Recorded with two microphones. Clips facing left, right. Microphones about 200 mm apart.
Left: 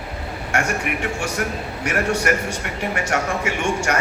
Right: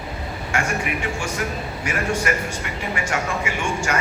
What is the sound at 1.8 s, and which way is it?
A man's voice, 70° left (ahead or behind).